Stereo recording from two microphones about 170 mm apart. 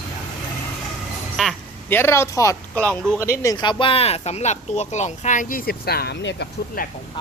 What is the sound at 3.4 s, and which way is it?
Speech, 25° left (ahead or behind).